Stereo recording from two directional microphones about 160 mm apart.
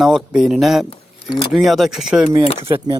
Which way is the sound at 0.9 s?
30° left (ahead or behind).